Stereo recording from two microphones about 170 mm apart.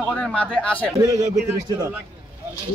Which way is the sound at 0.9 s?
20° right (ahead or behind).